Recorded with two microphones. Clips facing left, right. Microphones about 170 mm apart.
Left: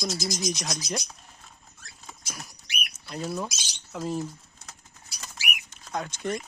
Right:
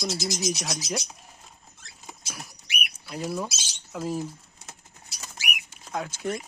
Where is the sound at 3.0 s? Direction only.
5° right (ahead or behind).